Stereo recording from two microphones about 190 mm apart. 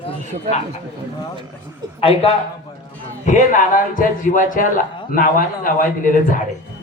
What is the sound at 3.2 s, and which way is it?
A man's voice, 40° left (ahead or behind).